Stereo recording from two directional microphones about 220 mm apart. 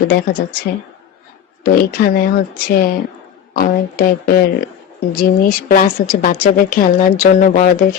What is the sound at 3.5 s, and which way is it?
Speech, 40° left (ahead or behind).